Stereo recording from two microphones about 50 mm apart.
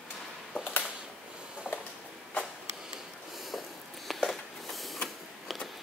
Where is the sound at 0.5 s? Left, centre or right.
Right.